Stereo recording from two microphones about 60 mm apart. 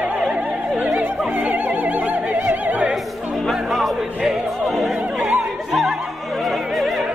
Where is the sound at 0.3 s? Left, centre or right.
Right.